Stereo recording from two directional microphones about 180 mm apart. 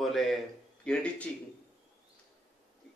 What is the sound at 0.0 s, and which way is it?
A man's voice, centre (ahead or behind).